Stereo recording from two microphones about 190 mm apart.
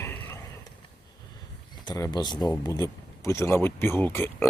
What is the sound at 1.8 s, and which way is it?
Speech, 20° left (ahead or behind).